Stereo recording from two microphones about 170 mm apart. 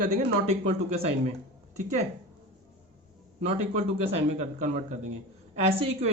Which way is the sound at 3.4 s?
40° right (ahead or behind).